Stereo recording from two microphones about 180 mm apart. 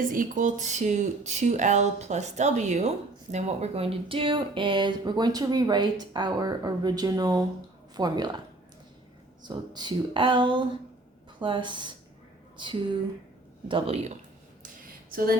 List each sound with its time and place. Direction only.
0.0 s speech: 50° right (ahead or behind); by 8.4 s 25° right (ahead or behind)
9.4 s speech: 25° right (ahead or behind)
15.1 s a sound: 55° right (ahead or behind)